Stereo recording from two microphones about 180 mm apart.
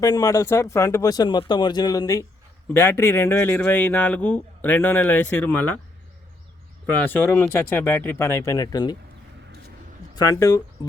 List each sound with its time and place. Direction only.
0.0 s a man's voice: 20° left (ahead or behind)
7.0 s a man's voice: 10° left (ahead or behind)
10.2 s speech: 20° left (ahead or behind)